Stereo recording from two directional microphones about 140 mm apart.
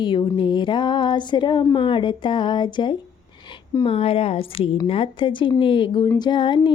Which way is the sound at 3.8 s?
45° left (ahead or behind).